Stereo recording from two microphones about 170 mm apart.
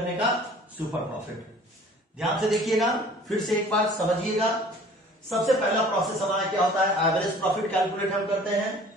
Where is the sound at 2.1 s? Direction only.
Centre (ahead or behind).